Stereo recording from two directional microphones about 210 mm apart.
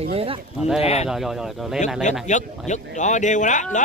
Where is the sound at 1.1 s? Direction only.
Centre (ahead or behind).